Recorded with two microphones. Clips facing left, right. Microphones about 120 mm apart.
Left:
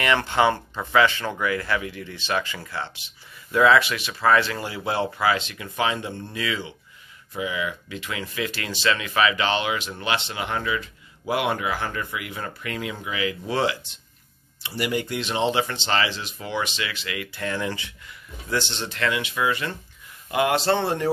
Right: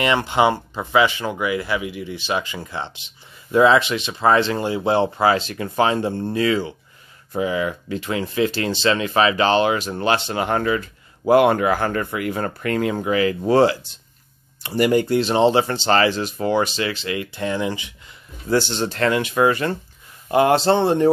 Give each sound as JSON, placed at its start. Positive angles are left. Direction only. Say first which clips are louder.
{"t": 0.0, "sound": "speech", "louder": "right 3 dB", "side_deg": -20}
{"t": 18.5, "sound": "speech", "louder": "right 8 dB", "side_deg": -40}